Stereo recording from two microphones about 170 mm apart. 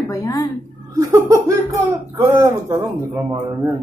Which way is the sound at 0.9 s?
20° right (ahead or behind).